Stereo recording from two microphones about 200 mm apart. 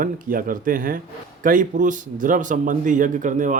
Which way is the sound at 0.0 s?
45° right (ahead or behind).